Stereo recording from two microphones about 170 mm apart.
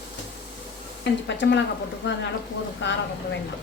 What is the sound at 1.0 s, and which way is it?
Speech, 90° left.